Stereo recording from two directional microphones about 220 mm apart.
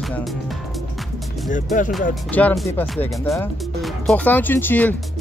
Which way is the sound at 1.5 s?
35° left (ahead or behind).